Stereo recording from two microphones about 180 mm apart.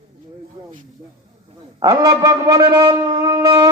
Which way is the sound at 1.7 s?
20° right (ahead or behind).